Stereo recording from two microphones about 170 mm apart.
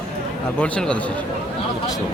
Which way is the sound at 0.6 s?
5° left (ahead or behind).